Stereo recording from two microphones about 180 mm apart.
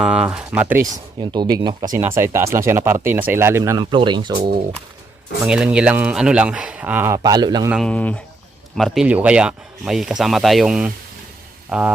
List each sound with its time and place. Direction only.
0.0 s speech: 5° right (ahead or behind)
1.2 s speech: 25° right (ahead or behind)
4.4 s speech: 60° right (ahead or behind)
5.5 s speech: 5° right (ahead or behind); by 7.7 s 25° right (ahead or behind)
7.7 s speech: 5° left (ahead or behind)